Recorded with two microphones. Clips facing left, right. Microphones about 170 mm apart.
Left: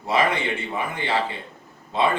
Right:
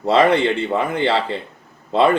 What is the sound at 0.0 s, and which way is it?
Speech, 75° right (ahead or behind).